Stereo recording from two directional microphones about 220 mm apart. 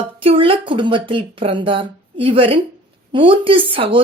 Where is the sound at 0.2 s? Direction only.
25° right (ahead or behind).